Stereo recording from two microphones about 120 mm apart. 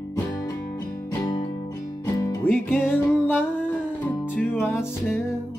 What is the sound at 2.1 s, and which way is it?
Music, 25° left (ahead or behind).